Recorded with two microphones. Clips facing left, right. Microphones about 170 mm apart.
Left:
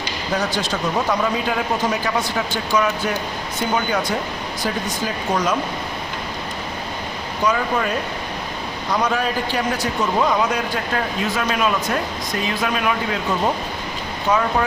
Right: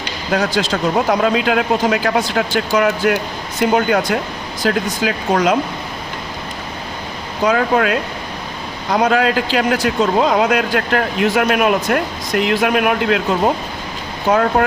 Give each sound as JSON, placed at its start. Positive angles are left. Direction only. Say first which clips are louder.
{"t": 0.3, "sound": "speech", "louder": "right 5 dB", "side_deg": -90}
{"t": 7.4, "sound": "speech", "louder": "right 6 dB", "side_deg": -85}
{"t": 9.0, "sound": "speech", "louder": "right 7 dB", "side_deg": -85}
{"t": 14.5, "sound": "speech", "louder": "right 5 dB", "side_deg": -70}